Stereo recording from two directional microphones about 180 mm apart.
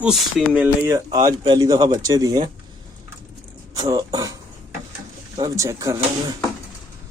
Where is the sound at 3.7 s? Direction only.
20° right (ahead or behind).